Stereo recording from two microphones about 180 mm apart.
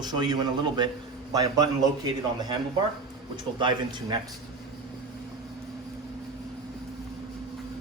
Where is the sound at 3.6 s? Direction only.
25° right (ahead or behind).